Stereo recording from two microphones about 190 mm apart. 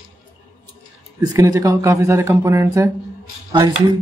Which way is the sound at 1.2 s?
20° right (ahead or behind).